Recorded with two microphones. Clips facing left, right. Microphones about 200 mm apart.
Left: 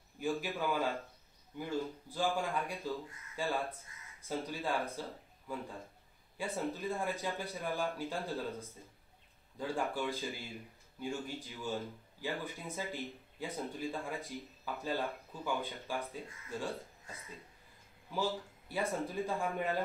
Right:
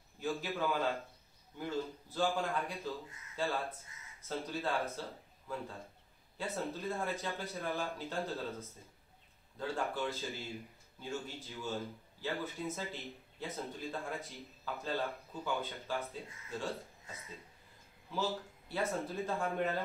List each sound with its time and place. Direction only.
0.2 s speech: 15° left (ahead or behind)
6.3 s speech: 15° left (ahead or behind)
18.1 s speech: 10° left (ahead or behind)